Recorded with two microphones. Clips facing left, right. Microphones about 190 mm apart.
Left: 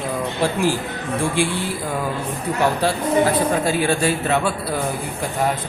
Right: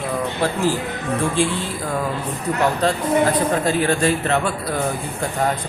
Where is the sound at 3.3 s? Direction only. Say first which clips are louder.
Even; 10° left (ahead or behind).